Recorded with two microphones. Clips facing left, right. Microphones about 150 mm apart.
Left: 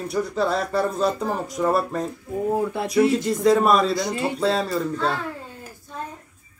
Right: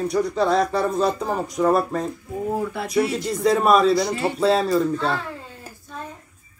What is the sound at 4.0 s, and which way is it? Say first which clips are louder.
Speech: right 2 dB; 20° left (ahead or behind).